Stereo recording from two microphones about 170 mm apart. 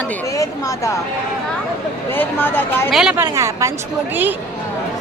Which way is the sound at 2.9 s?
Centre (ahead or behind).